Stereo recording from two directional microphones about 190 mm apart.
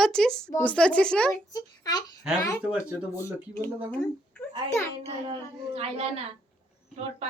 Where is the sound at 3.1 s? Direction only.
15° left (ahead or behind).